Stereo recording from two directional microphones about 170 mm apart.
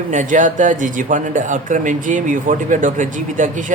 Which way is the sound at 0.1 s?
50° right (ahead or behind).